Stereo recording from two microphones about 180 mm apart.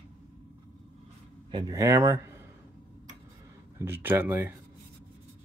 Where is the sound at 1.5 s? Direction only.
20° right (ahead or behind).